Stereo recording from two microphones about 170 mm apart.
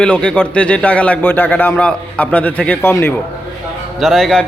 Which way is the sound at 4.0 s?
Centre (ahead or behind).